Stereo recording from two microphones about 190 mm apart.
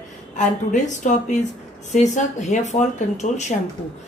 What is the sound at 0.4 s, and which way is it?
A woman's voice, 40° left (ahead or behind).